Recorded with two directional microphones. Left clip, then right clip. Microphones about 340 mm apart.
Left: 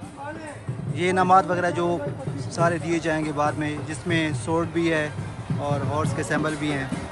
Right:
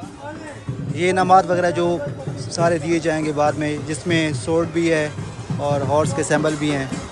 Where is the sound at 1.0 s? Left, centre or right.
Centre.